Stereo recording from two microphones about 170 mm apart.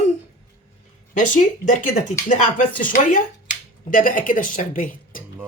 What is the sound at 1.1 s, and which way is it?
Speech, 50° left (ahead or behind).